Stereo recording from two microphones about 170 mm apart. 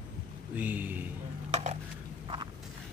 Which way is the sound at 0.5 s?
10° right (ahead or behind).